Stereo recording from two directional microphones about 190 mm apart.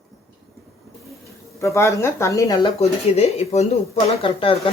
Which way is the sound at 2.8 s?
35° left (ahead or behind).